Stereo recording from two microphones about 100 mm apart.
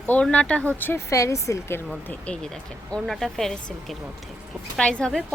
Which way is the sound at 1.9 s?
10° left (ahead or behind).